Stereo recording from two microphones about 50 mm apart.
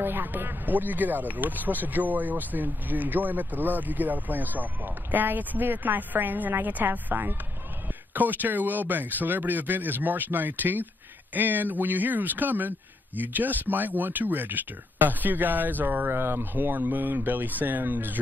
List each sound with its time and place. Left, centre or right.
0.0 s speech: right